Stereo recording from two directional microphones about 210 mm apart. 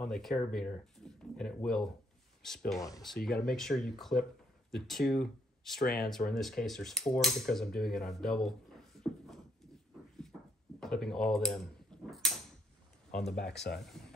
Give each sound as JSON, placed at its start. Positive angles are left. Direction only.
{"t": 0.0, "sound": "speech", "side_deg": 0}
{"t": 10.8, "sound": "a sound", "side_deg": 0}
{"t": 13.3, "sound": "speech", "side_deg": 55}
{"t": 13.7, "sound": "speech", "side_deg": 0}